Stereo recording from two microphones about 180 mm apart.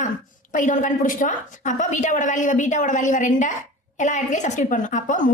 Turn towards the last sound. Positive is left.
turn(degrees=45)  # may be behind; listen again after turning